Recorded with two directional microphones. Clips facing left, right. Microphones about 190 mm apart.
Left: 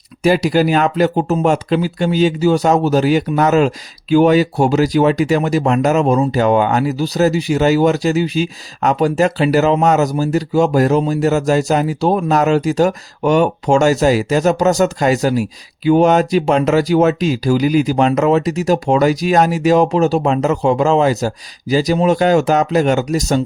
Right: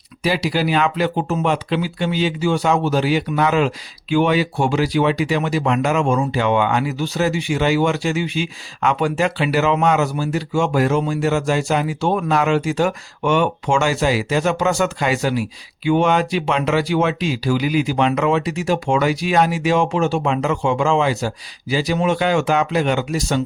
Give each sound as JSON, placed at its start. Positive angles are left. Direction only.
{"t": 0.2, "sound": "speech", "side_deg": 45}